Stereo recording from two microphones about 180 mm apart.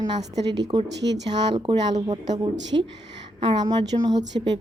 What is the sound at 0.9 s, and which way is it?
Speech, 70° right (ahead or behind).